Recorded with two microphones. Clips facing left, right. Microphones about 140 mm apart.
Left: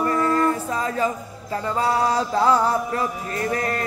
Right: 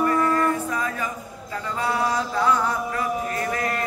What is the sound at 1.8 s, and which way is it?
Mantra, 35° left (ahead or behind).